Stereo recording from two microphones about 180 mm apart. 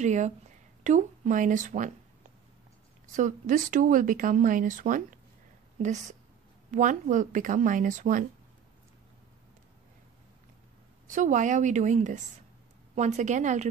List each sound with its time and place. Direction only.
0.0 s a woman's voice: 40° right (ahead or behind)
3.1 s a woman's voice: 45° right (ahead or behind)
11.1 s a woman's voice: 45° right (ahead or behind)